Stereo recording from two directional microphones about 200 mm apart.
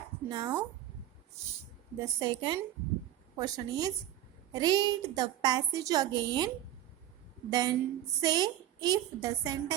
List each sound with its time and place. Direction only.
0.3 s a woman's voice: 20° right (ahead or behind)
7.5 s a woman's voice: 20° right (ahead or behind)